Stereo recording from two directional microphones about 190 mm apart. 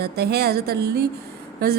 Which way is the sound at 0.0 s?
55° right (ahead or behind).